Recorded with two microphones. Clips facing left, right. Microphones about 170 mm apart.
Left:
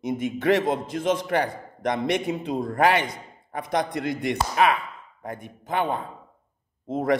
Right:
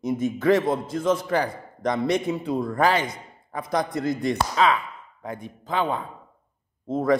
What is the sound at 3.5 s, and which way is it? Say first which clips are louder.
A man's voice: even; 70° left (ahead or behind).